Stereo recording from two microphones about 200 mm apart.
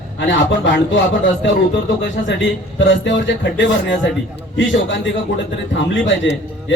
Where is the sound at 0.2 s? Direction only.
65° left (ahead or behind).